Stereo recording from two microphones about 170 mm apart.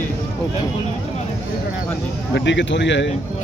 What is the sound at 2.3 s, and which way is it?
Speech, 90° left.